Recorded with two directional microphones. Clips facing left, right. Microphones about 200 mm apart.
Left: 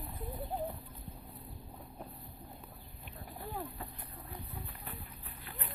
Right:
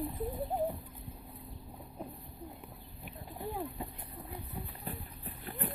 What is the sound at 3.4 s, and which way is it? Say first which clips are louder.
Vehicle: right 4 dB; 15° right (ahead or behind).